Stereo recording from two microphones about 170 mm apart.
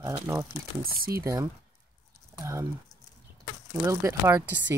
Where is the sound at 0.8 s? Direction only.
60° right (ahead or behind).